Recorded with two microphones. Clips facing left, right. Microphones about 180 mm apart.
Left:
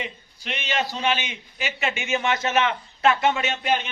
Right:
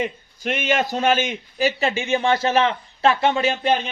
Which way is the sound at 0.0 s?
50° right (ahead or behind).